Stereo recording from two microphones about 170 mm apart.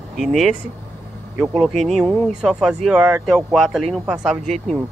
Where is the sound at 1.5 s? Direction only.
5° left (ahead or behind).